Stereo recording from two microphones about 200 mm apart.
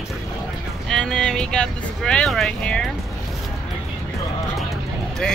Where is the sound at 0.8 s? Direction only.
5° left (ahead or behind).